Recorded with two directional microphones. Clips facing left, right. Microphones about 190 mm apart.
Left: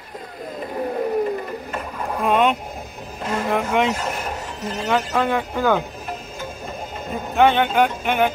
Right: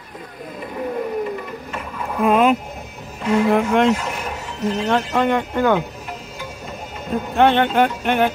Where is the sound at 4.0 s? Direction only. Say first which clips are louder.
Even; 40° left (ahead or behind).